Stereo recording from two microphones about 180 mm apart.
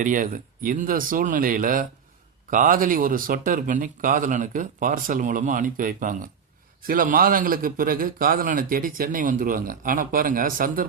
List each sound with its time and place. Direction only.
0.0 s a man's voice: 45° right (ahead or behind)